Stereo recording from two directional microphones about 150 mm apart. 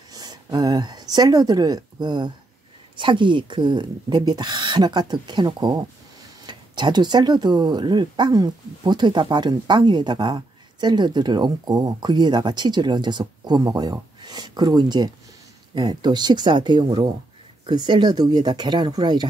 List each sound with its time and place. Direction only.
0.1 s speech: 25° right (ahead or behind)